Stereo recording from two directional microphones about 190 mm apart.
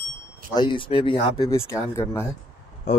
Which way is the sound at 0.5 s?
25° left (ahead or behind).